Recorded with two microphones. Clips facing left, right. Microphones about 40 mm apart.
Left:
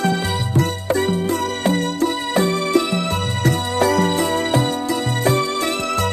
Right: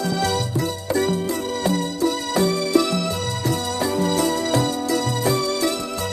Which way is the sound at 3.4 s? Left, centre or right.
Left.